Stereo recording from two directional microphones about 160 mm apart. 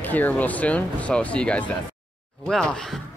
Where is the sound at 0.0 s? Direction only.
10° left (ahead or behind).